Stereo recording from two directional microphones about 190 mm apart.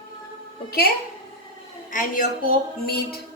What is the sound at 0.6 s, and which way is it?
Music, 55° left (ahead or behind).